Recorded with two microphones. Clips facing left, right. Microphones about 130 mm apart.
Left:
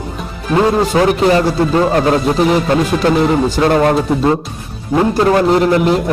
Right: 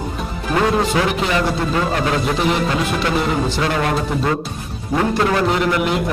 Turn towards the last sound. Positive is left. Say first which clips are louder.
# left 7 dB
turn(degrees=35)  # may be behind; listen again after turning